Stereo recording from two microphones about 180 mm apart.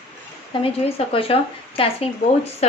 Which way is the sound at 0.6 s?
30° left (ahead or behind).